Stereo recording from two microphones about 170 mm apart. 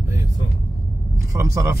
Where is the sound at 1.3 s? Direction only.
15° right (ahead or behind).